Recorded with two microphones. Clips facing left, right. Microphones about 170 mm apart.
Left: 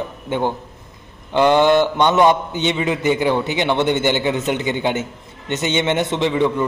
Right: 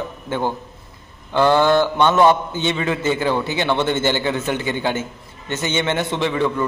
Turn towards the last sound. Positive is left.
turn(degrees=20)  # may be behind; listen again after turning